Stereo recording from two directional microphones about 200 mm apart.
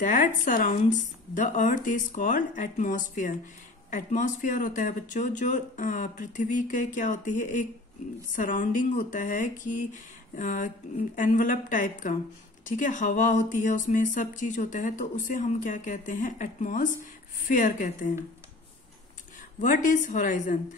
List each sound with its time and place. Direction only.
0.0 s speech: 40° left (ahead or behind)
19.6 s speech: 40° left (ahead or behind)